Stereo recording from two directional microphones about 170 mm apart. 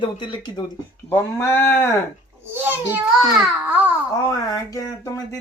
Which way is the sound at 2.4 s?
15° right (ahead or behind).